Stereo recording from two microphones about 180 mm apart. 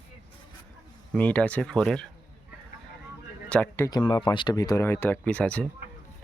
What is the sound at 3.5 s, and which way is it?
Speech, 10° left (ahead or behind).